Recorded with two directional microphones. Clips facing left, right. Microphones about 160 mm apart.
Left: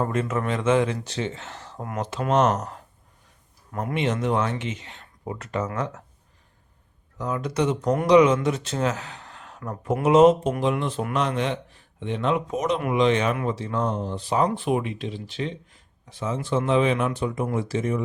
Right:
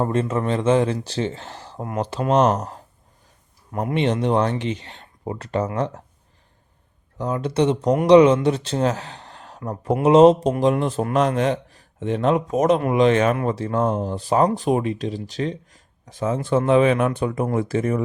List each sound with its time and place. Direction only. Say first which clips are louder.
0.0 s speech: right 3 dB; 30° right (ahead or behind)
7.2 s speech: right 4 dB; 30° right (ahead or behind); by 18.0 s 55° right (ahead or behind)